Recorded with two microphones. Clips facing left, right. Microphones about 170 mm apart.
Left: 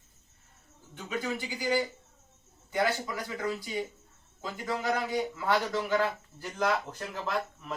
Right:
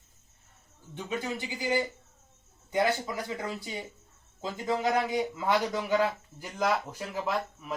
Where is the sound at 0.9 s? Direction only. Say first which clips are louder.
Even; 20° right (ahead or behind).